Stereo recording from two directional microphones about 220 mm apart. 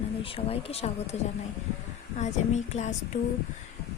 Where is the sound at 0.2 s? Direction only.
25° left (ahead or behind).